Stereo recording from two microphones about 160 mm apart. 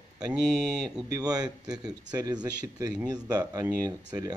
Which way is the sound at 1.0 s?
25° right (ahead or behind).